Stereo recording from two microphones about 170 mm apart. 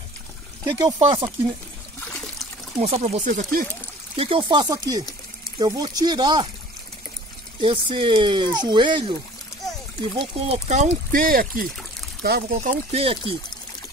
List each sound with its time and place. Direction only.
0.7 s speech: 25° right (ahead or behind)
2.0 s trickle: 5° left (ahead or behind)
2.8 s speech: 40° right (ahead or behind)
4.2 s speech: 30° right (ahead or behind)
7.6 s speech: 30° right (ahead or behind)
10.1 s speech: 35° right (ahead or behind); by 12.7 s 60° right (ahead or behind)
12.9 s speech: 35° right (ahead or behind)